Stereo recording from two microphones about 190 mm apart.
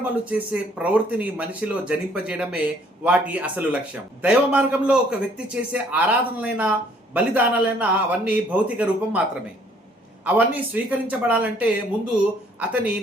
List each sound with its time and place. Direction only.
0.0 s speech: 10° right (ahead or behind)
10.2 s speech: 10° right (ahead or behind)